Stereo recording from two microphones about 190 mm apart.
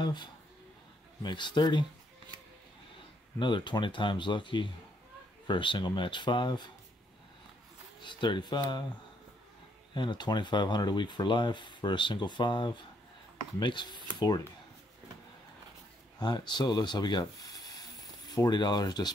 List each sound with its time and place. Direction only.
0.0 s speech: 25° left (ahead or behind)
3.3 s speech: 25° left (ahead or behind)
8.0 s speech: 25° left (ahead or behind)
9.9 s speech: 25° left (ahead or behind)
16.2 s speech: 25° left (ahead or behind)